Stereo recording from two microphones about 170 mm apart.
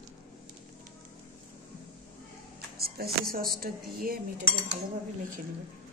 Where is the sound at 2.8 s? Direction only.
65° right (ahead or behind).